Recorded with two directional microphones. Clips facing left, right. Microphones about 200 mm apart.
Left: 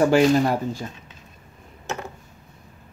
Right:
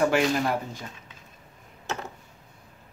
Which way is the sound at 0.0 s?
30° left (ahead or behind).